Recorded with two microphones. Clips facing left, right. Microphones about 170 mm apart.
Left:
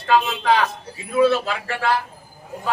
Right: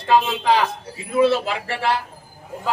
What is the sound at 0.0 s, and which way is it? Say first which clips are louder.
A man's voice: right 1 dB; 25° right (ahead or behind).